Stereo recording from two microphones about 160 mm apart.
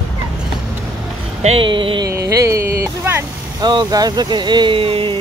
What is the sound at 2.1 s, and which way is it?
Music, 20° right (ahead or behind).